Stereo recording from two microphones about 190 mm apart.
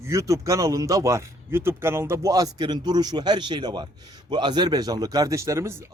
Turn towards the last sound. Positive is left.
turn(degrees=-15)  # may be behind; listen again after turning